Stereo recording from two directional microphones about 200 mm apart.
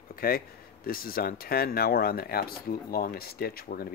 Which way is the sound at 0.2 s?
45° left (ahead or behind).